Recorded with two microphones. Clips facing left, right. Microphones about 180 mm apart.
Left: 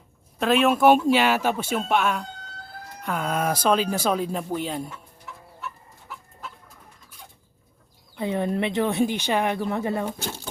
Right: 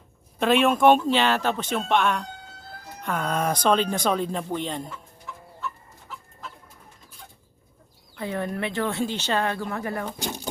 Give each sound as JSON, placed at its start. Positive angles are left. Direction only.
{"t": 0.3, "sound": "speech", "side_deg": 0}
{"t": 8.1, "sound": "speech", "side_deg": 20}
{"t": 10.2, "sound": "speech", "side_deg": -15}